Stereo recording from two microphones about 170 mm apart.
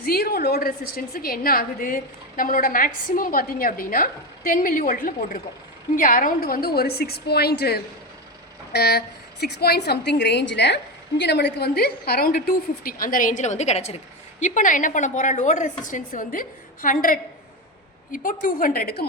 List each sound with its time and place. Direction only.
0.0 s a woman's voice: 65° left (ahead or behind)